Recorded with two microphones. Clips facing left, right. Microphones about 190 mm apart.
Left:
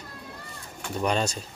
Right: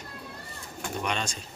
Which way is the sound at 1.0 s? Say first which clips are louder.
Left 7 dB; 40° left (ahead or behind).